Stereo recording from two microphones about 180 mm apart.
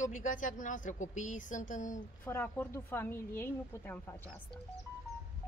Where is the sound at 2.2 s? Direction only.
10° left (ahead or behind).